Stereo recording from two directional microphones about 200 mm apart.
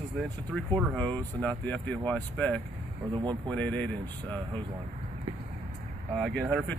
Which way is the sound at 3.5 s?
5° left (ahead or behind).